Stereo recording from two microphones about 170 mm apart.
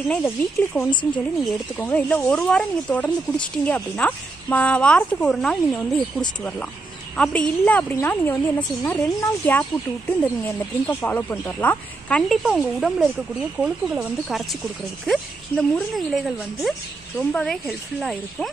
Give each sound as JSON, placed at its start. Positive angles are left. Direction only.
{"t": 0.1, "sound": "a woman's voice", "side_deg": 10}
{"t": 7.2, "sound": "a woman's voice", "side_deg": 5}